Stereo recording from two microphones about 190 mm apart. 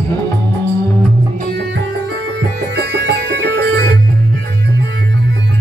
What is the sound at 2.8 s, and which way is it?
Music, 65° right (ahead or behind).